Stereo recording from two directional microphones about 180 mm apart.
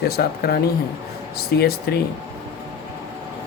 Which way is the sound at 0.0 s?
60° left (ahead or behind).